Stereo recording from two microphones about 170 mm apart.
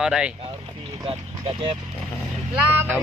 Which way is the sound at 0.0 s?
5° right (ahead or behind).